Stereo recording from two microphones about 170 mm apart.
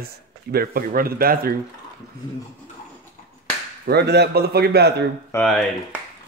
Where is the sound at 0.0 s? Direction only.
65° right (ahead or behind).